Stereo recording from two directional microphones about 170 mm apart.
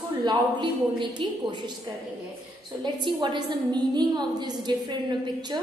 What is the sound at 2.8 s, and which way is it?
A woman's voice, 25° right (ahead or behind).